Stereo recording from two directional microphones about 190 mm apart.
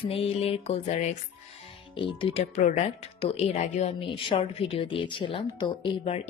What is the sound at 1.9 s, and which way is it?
A woman's voice, 25° left (ahead or behind).